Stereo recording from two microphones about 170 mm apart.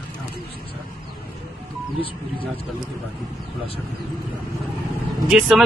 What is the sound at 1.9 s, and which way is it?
Speech, 30° left (ahead or behind).